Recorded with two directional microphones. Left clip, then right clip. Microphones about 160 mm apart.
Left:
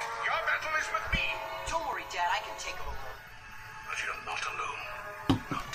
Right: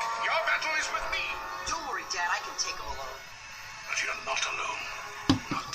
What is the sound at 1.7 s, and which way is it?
Music, 20° right (ahead or behind).